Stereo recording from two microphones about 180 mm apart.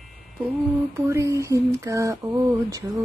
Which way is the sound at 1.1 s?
15° right (ahead or behind).